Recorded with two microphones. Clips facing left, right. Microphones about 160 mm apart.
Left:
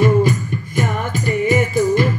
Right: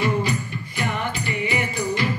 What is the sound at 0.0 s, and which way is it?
Music, 50° left (ahead or behind).